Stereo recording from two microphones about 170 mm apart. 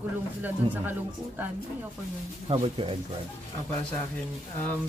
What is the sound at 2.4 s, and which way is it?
Speech, 35° right (ahead or behind).